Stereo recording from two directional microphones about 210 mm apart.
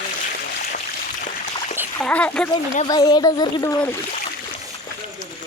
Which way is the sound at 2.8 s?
20° left (ahead or behind).